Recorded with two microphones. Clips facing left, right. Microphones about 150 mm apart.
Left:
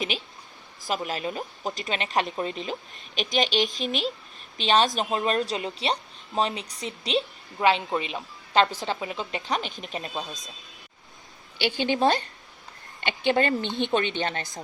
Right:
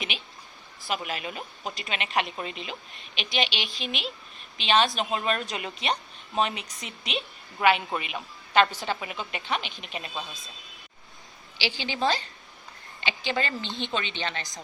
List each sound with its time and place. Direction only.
0.1 s a woman's voice: 40° left (ahead or behind)
11.5 s a woman's voice: 55° left (ahead or behind)